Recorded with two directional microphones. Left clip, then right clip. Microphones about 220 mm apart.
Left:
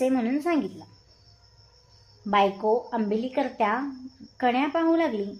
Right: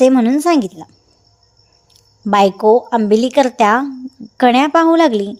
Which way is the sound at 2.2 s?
40° right (ahead or behind).